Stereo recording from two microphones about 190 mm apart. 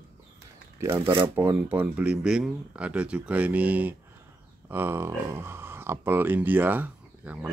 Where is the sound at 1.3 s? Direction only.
10° right (ahead or behind).